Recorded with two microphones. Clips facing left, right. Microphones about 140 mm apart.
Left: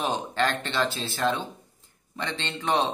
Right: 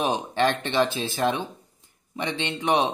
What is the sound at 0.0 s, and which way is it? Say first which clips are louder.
A man's voice: right 3 dB; 15° right (ahead or behind).